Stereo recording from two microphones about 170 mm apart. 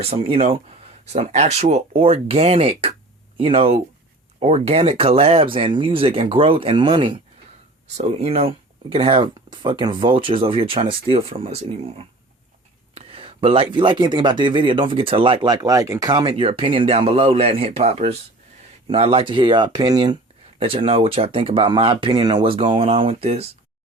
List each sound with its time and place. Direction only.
0.0 s speech: 35° right (ahead or behind)